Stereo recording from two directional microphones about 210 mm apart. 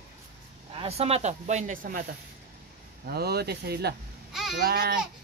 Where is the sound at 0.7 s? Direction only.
30° right (ahead or behind).